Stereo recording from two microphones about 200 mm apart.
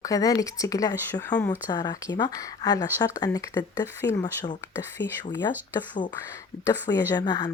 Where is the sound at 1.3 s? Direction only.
5° left (ahead or behind).